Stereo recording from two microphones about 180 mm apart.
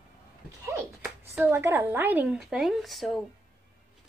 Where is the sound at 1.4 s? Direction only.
10° right (ahead or behind).